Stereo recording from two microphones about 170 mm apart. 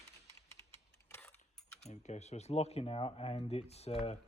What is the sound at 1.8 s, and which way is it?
Speech, 40° left (ahead or behind).